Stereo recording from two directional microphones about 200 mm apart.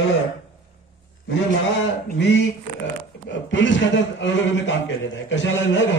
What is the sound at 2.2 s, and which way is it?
A man's voice, 60° left (ahead or behind).